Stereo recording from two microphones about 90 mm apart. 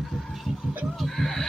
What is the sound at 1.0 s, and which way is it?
Chicken, centre (ahead or behind).